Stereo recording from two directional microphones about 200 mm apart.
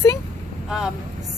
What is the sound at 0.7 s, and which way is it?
Speech, centre (ahead or behind).